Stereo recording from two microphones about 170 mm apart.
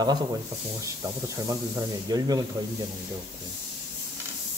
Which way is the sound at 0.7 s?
20° right (ahead or behind).